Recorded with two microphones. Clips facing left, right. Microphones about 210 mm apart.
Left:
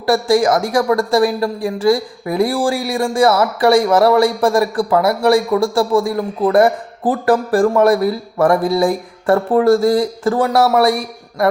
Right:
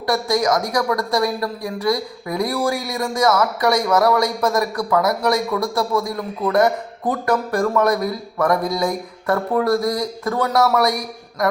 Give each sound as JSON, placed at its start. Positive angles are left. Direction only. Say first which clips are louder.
{"t": 0.0, "sound": "speech", "louder": "left 6 dB", "side_deg": 30}